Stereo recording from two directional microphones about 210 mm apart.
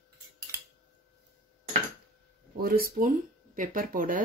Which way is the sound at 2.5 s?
45° right (ahead or behind).